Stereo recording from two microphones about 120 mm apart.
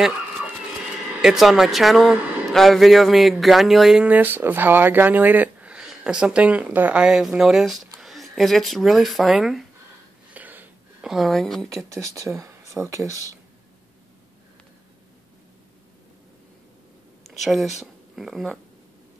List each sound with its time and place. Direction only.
1.2 s speech: 5° right (ahead or behind)
10.3 s a sound: 15° right (ahead or behind)
11.1 s speech: centre (ahead or behind)
11.9 s speech: 25° right (ahead or behind)
17.3 s speech: centre (ahead or behind)